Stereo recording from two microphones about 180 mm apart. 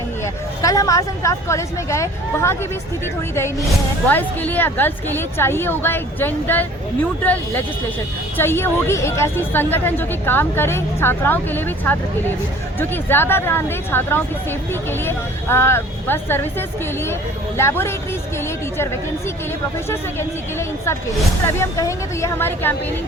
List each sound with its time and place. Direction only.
0.6 s a woman's voice: 20° left (ahead or behind)
4.1 s a woman's voice: 10° left (ahead or behind)
19.9 s a woman's voice: 15° left (ahead or behind)